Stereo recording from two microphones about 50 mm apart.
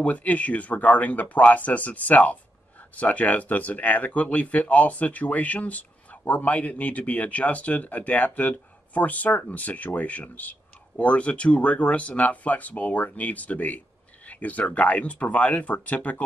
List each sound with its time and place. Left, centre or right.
0.0 s speech: left